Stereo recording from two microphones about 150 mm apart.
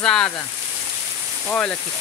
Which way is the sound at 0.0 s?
5° left (ahead or behind).